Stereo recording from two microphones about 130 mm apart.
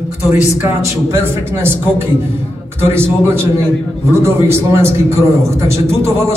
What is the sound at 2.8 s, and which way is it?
A man's voice, 20° right (ahead or behind).